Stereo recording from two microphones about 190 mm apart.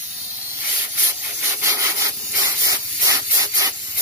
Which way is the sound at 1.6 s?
15° right (ahead or behind).